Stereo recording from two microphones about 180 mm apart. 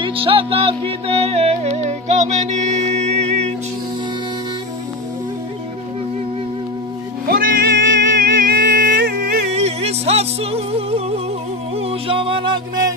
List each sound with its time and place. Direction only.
0.0 s music: 30° right (ahead or behind)
7.2 s music: 50° right (ahead or behind)
9.5 s music: 35° right (ahead or behind)